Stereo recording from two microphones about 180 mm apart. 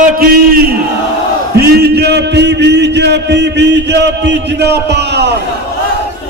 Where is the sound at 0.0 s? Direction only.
50° right (ahead or behind); by 5.3 s 70° right (ahead or behind).